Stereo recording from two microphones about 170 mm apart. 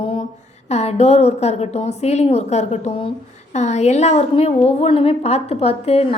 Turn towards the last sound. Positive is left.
turn(degrees=35)  # may be behind; listen again after turning